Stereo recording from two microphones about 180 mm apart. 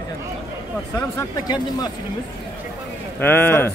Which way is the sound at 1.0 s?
20° left (ahead or behind).